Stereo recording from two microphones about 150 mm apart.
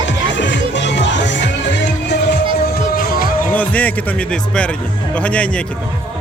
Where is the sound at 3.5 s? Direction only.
10° left (ahead or behind).